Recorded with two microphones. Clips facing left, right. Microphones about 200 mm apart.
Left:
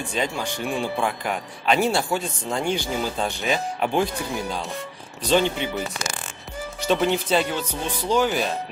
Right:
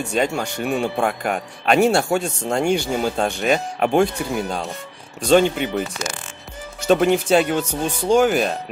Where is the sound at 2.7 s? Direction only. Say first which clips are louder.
Right 5 dB; 55° right (ahead or behind).